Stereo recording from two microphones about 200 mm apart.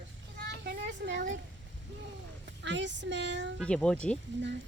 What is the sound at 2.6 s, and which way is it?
Child singing, 60° right (ahead or behind).